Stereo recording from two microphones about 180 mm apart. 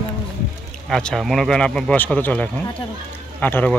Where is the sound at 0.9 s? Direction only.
Centre (ahead or behind).